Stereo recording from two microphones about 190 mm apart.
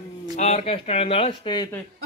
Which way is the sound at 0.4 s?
35° left (ahead or behind).